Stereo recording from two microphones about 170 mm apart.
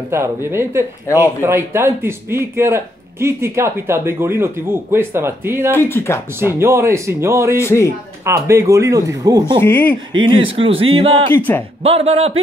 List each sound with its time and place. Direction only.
0.1 s a man's voice: 15° right (ahead or behind)
1.0 s speech: 15° left (ahead or behind)
1.4 s a man's voice: 15° right (ahead or behind)
5.8 s speech: 15° left (ahead or behind)
6.6 s a man's voice: 15° right (ahead or behind)
7.6 s speech: 15° left (ahead or behind)
8.3 s a man's voice: 15° right (ahead or behind)
9.6 s speech: 10° left (ahead or behind)
10.2 s speech: 30° right (ahead or behind)
11.3 s speech: 10° left (ahead or behind)
11.8 s speech: 35° right (ahead or behind)